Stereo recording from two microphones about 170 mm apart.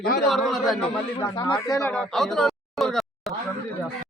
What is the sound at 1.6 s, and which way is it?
Speech, 20° left (ahead or behind).